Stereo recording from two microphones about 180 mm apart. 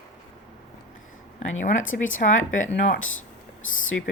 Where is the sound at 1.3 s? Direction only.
40° left (ahead or behind).